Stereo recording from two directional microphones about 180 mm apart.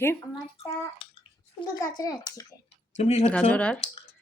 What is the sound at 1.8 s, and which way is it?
Speech, 15° left (ahead or behind).